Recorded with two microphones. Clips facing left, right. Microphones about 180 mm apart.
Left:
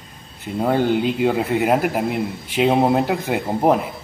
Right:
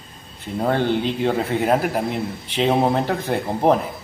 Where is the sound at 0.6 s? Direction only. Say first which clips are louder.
Left 2 dB; 10° left (ahead or behind).